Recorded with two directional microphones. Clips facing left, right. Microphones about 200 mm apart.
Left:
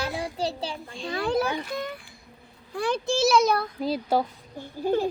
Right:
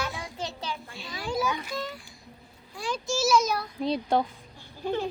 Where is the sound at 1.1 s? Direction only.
60° left (ahead or behind).